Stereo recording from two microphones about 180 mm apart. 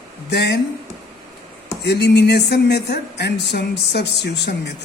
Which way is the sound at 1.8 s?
70° left (ahead or behind).